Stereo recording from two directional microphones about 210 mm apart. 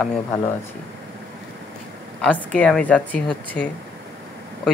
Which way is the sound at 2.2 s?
5° left (ahead or behind).